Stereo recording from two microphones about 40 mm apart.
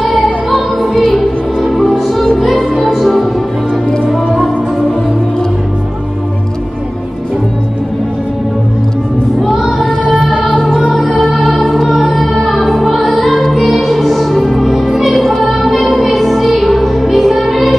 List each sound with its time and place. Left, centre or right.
0.5 s music: centre
9.4 s child singing: centre
11.2 s music: centre